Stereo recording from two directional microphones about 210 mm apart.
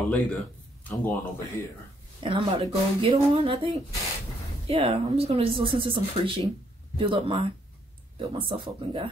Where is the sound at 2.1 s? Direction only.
25° right (ahead or behind).